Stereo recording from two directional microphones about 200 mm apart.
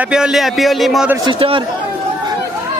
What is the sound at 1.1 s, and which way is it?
Speech, 25° right (ahead or behind).